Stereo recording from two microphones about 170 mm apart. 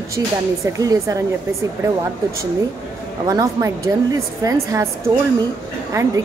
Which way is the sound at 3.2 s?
20° right (ahead or behind).